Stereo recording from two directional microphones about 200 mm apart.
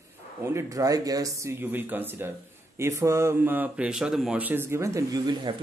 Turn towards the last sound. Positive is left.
turn(degrees=-20)  # may be behind; listen again after turning